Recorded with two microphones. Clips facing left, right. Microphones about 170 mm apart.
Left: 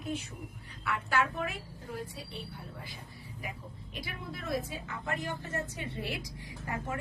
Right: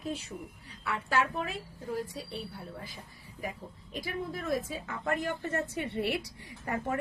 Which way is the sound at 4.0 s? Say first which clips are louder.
Right 6 dB; 45° right (ahead or behind).